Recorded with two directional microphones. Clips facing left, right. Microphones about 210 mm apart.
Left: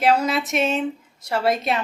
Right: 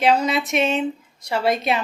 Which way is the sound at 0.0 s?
5° left (ahead or behind).